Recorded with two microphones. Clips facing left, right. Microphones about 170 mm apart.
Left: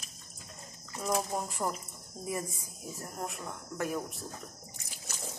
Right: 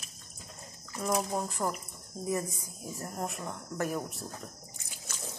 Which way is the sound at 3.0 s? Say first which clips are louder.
Right 3 dB; centre (ahead or behind).